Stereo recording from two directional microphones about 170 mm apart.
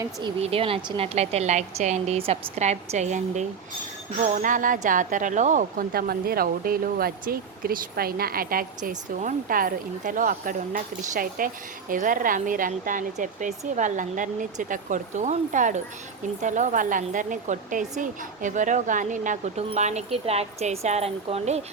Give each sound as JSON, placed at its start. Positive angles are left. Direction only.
{"t": 0.0, "sound": "a woman's voice", "side_deg": -25}